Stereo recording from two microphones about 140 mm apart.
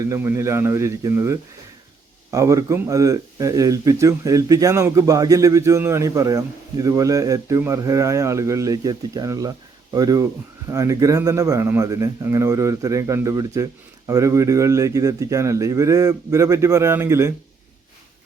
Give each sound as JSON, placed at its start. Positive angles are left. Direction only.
{"t": 0.0, "sound": "speech", "side_deg": -20}